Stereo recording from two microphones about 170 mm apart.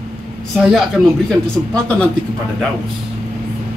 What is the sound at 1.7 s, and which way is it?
Speech, 5° left (ahead or behind).